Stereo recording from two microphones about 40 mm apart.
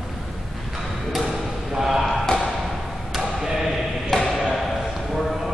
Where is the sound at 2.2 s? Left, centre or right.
Centre.